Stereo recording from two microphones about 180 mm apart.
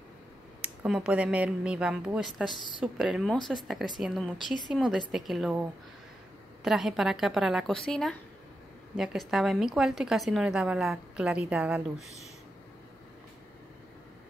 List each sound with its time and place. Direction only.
0.6 s a woman's voice: 5° right (ahead or behind)
2.5 s a woman's voice: 25° left (ahead or behind)
2.8 s a woman's voice: 5° right (ahead or behind)
6.6 s a woman's voice: centre (ahead or behind)